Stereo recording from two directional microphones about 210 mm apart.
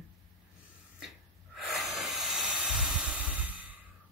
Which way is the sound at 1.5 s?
Centre (ahead or behind).